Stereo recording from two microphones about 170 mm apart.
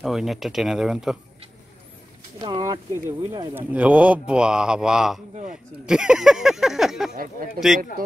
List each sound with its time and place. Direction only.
0.0 s speech: centre (ahead or behind)
2.3 s speech: 25° right (ahead or behind); by 5.2 s 5° right (ahead or behind)
5.3 s a sound: 45° right (ahead or behind)
5.9 s speech: 5° right (ahead or behind)
7.2 s speech: 55° right (ahead or behind)